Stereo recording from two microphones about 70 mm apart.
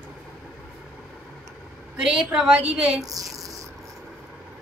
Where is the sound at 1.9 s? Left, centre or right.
Centre.